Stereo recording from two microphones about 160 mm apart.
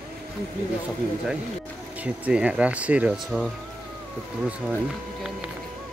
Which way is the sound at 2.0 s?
5° right (ahead or behind).